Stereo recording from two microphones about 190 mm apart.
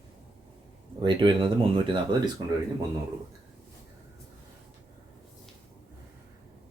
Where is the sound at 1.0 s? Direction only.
25° right (ahead or behind).